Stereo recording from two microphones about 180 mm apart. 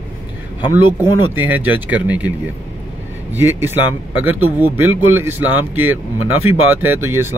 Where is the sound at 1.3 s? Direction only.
10° right (ahead or behind).